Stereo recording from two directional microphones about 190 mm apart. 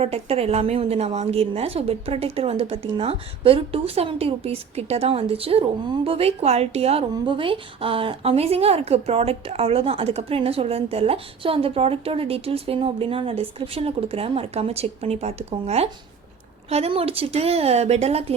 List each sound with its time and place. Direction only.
0.0 s speech: 30° right (ahead or behind)